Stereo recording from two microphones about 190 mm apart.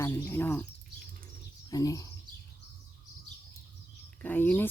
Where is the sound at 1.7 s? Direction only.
20° left (ahead or behind).